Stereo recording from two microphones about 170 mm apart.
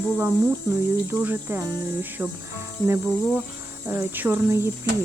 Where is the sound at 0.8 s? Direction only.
15° right (ahead or behind).